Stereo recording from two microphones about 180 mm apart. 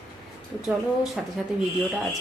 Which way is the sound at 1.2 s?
Centre (ahead or behind).